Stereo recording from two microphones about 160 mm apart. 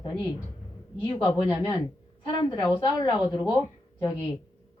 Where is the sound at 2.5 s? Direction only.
30° left (ahead or behind).